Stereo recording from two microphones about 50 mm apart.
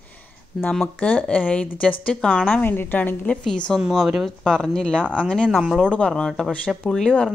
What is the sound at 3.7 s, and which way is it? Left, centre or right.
Speech, centre.